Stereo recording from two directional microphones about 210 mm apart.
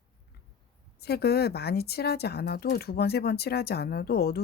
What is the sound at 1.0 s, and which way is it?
Speech, 50° left (ahead or behind).